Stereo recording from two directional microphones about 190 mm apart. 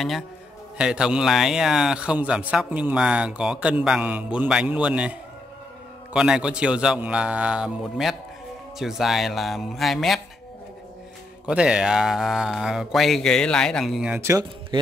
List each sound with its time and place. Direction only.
0.7 s a man's voice: 5° right (ahead or behind)
6.1 s a man's voice: 5° right (ahead or behind)
11.4 s a man's voice: 5° right (ahead or behind)
14.7 s speech: 25° right (ahead or behind)